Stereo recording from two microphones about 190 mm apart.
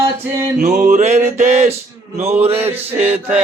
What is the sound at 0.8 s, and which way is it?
Music, 40° right (ahead or behind).